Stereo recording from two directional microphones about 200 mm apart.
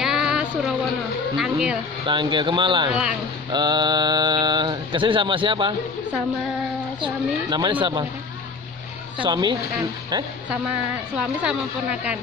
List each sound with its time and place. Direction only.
0.0 s a sound: 5° right (ahead or behind)
1.3 s speech: 5° right (ahead or behind)
2.0 s speech: 25° right (ahead or behind)
2.9 s speech: 5° right (ahead or behind)
3.5 s speech: 20° right (ahead or behind)
7.4 s speech: 20° right (ahead or behind)
9.2 s speech: 20° right (ahead or behind)
11.1 s a woman's voice: 5° right (ahead or behind)